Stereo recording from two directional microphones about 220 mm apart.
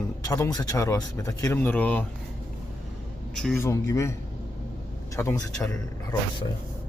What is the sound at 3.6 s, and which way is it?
Speech, 15° left (ahead or behind).